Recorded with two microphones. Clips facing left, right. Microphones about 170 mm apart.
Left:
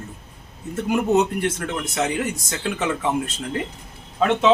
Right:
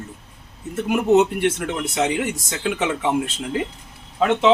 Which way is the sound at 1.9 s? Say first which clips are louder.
Right 2 dB; 5° right (ahead or behind).